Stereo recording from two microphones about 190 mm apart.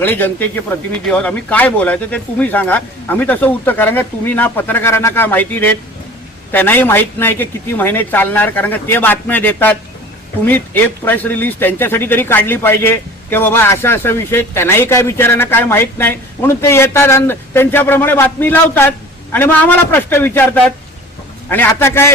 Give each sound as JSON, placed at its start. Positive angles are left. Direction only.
{"t": 0.0, "sound": "speech", "side_deg": 10}
{"t": 21.5, "sound": "speech", "side_deg": 10}